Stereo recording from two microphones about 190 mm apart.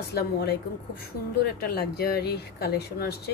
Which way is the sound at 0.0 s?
60° left (ahead or behind).